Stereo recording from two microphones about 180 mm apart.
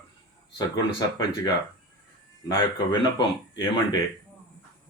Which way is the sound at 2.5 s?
25° left (ahead or behind).